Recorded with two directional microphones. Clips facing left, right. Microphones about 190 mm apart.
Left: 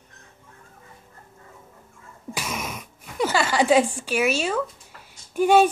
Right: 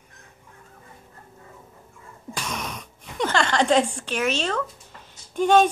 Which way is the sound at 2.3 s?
5° left (ahead or behind).